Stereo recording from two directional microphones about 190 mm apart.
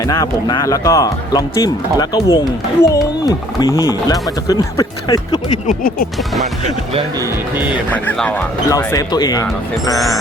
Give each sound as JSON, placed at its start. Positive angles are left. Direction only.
{"t": 0.0, "sound": "speech", "side_deg": 20}
{"t": 5.6, "sound": "speech", "side_deg": 45}
{"t": 7.9, "sound": "speech", "side_deg": 5}
{"t": 8.7, "sound": "speech", "side_deg": 15}